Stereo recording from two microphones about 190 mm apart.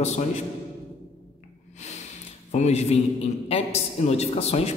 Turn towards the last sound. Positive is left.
turn(degrees=35)  # may be behind; listen again after turning